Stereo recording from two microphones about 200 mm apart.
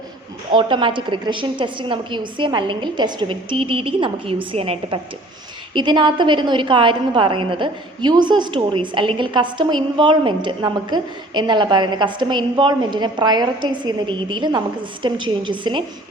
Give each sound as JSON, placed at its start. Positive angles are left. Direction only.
{"t": 0.5, "sound": "a woman's voice", "side_deg": -25}